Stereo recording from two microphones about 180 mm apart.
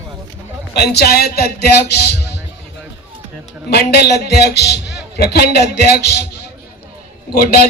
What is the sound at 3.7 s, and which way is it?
A man's voice, 65° left (ahead or behind).